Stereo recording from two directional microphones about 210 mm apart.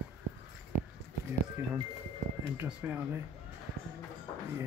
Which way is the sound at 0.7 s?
35° left (ahead or behind).